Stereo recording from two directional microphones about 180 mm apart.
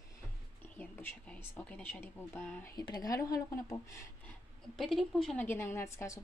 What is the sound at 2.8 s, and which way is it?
A woman's voice, 20° left (ahead or behind).